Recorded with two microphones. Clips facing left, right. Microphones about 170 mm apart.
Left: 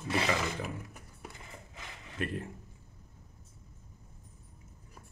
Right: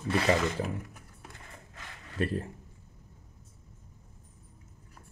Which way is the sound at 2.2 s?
35° right (ahead or behind).